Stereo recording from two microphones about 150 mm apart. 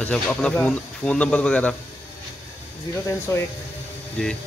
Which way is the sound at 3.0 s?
15° left (ahead or behind).